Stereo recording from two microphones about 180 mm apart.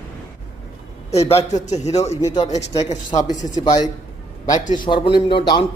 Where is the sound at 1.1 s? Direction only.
35° left (ahead or behind).